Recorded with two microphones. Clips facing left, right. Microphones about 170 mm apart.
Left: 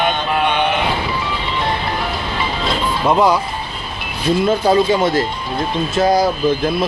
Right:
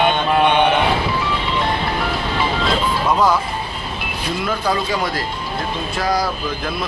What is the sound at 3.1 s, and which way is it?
Speech, 20° left (ahead or behind).